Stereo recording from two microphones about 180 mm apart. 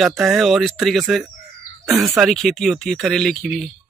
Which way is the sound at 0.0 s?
Centre (ahead or behind).